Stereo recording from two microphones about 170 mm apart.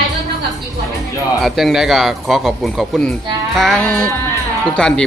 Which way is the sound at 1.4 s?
Centre (ahead or behind).